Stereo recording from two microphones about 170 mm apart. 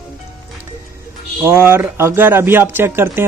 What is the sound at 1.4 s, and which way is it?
Speech, 15° right (ahead or behind).